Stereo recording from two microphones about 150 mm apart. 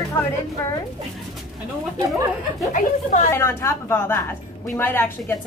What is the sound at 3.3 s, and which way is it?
A woman's voice, 20° left (ahead or behind).